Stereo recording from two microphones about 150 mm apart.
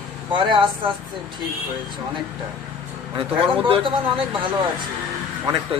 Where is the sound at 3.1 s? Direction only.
35° right (ahead or behind).